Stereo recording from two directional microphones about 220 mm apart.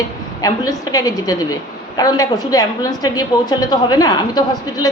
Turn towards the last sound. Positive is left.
turn(degrees=15)  # may be behind; listen again after turning